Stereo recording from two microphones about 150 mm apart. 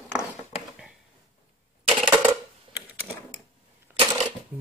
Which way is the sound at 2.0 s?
5° right (ahead or behind).